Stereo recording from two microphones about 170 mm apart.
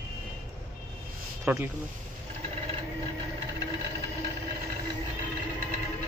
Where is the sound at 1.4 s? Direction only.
5° right (ahead or behind).